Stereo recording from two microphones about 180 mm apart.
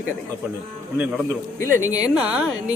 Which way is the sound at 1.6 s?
15° left (ahead or behind).